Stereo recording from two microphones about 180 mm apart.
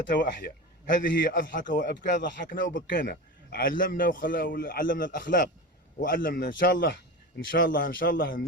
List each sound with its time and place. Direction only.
0.2 s a man's voice: 55° left (ahead or behind)